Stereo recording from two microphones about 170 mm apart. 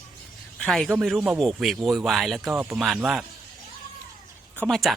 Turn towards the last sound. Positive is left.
turn(degrees=0)  # may be behind; listen again after turning